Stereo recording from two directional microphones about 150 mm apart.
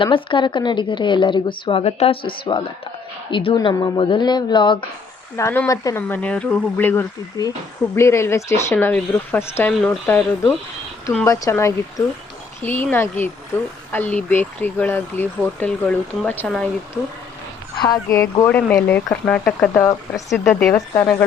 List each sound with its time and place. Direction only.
0.0 s speech: 35° left (ahead or behind)
5.4 s speech: 15° left (ahead or behind)
9.8 s speech: 5° left (ahead or behind)
11.3 s speech: 20° left (ahead or behind)
17.7 s speech: 25° left (ahead or behind); by 19.8 s 5° left (ahead or behind)
19.8 s speech: 20° left (ahead or behind)
20.3 s speech: centre (ahead or behind)
20.9 s speech: 15° left (ahead or behind)